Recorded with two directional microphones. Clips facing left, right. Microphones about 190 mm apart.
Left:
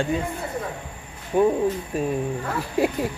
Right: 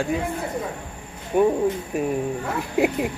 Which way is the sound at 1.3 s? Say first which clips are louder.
Even; 10° right (ahead or behind).